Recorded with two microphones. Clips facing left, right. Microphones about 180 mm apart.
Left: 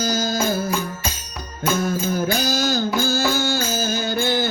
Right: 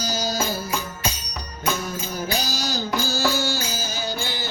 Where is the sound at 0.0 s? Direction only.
50° left (ahead or behind).